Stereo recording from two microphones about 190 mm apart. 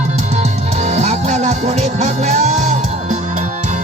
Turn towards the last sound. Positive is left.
turn(degrees=-40)  # may be behind; listen again after turning